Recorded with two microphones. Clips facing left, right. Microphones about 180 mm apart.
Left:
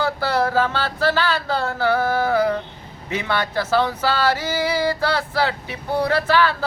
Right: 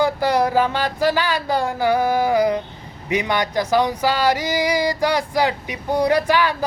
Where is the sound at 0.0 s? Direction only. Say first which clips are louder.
Right 3 dB; 15° right (ahead or behind).